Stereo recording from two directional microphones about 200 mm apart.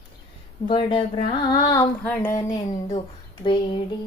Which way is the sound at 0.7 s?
25° left (ahead or behind).